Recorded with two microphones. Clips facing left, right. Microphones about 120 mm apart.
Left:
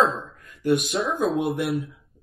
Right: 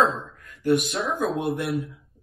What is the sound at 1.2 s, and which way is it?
Speech, 20° left (ahead or behind).